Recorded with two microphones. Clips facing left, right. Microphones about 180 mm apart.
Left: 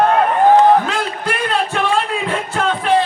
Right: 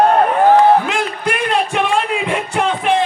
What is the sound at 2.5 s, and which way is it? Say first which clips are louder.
Music: right 1 dB; 15° right (ahead or behind).